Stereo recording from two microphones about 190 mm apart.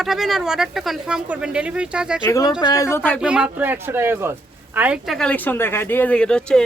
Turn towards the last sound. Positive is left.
turn(degrees=5)  # may be behind; listen again after turning